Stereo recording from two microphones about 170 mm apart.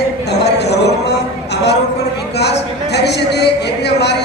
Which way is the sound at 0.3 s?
80° left.